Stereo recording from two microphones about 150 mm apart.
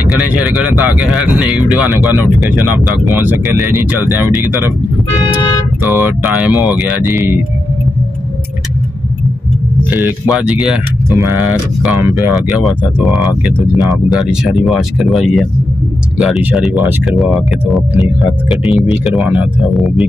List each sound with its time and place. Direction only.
0.1 s speech: 5° right (ahead or behind)
5.9 s speech: 15° right (ahead or behind)
9.8 s speech: 10° right (ahead or behind)